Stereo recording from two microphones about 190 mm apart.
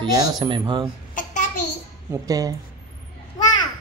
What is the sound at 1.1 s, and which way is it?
Babbling, 40° left (ahead or behind).